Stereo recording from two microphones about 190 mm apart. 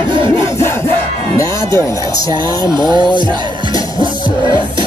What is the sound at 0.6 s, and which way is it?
Crowd, 15° left (ahead or behind).